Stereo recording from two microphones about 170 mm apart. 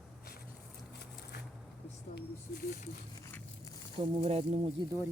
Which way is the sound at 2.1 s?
55° left (ahead or behind).